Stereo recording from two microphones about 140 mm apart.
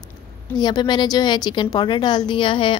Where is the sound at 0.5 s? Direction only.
30° left (ahead or behind).